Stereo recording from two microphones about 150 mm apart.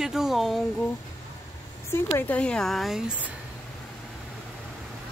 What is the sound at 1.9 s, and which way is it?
A woman's voice, 15° left (ahead or behind).